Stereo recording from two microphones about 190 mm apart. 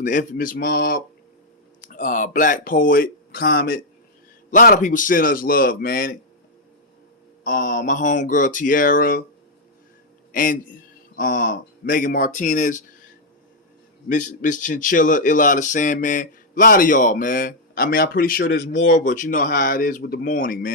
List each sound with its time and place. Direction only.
0.0 s speech: 45° left (ahead or behind)
7.4 s speech: 45° left (ahead or behind)
10.3 s a man's voice: 45° left (ahead or behind)
14.0 s speech: 40° left (ahead or behind)
18.5 s speech: 65° left (ahead or behind)
18.9 s speech: 45° left (ahead or behind)